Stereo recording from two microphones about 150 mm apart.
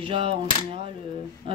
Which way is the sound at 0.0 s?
40° right (ahead or behind).